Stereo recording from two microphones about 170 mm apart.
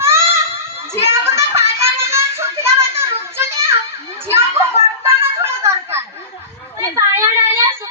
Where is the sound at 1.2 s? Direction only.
15° right (ahead or behind).